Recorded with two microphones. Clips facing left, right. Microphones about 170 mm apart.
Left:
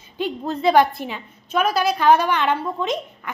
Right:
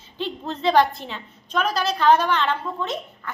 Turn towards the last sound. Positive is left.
turn(degrees=15)  # may be behind; listen again after turning